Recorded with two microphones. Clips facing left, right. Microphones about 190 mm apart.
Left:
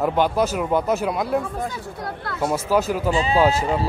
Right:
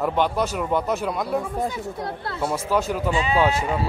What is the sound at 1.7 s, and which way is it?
Speech, 25° right (ahead or behind).